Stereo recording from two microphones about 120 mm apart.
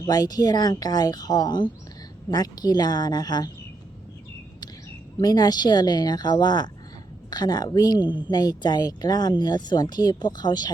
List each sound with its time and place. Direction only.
0.0 s speech: 30° left (ahead or behind)
5.2 s speech: 35° left (ahead or behind)